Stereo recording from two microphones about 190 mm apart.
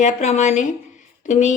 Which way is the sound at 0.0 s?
40° left (ahead or behind).